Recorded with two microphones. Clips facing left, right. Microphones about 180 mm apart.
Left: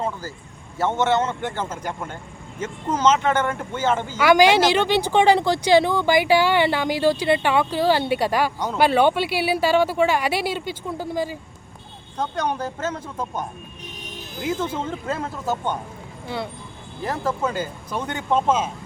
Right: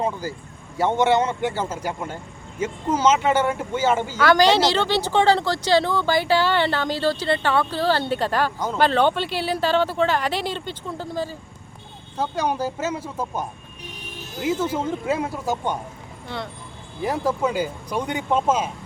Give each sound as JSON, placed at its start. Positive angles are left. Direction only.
{"t": 0.0, "sound": "speech", "side_deg": -15}
{"t": 4.2, "sound": "speech", "side_deg": 10}
{"t": 8.5, "sound": "speech", "side_deg": 0}
{"t": 8.8, "sound": "speech", "side_deg": 10}
{"t": 12.1, "sound": "speech", "side_deg": -5}
{"t": 14.4, "sound": "speech", "side_deg": -5}
{"t": 17.0, "sound": "speech", "side_deg": -10}